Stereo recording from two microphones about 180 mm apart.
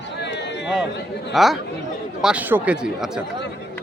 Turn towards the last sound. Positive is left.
turn(degrees=-5)  # may be behind; listen again after turning